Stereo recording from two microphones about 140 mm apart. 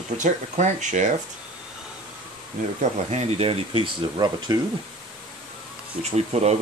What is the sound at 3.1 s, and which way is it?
Speech, 50° right (ahead or behind).